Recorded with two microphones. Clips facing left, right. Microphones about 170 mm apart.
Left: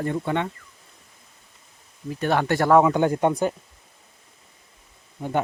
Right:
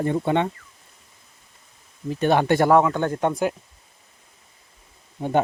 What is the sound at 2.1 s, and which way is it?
Speech, 20° right (ahead or behind).